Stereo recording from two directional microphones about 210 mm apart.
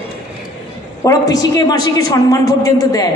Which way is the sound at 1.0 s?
15° left (ahead or behind).